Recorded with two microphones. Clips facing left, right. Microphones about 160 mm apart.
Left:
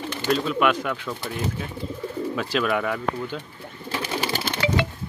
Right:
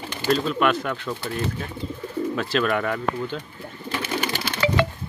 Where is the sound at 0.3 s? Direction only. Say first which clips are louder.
Right 1 dB; 5° left (ahead or behind).